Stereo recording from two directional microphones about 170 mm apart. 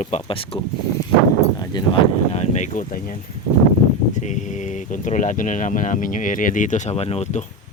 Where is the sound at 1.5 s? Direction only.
25° left (ahead or behind).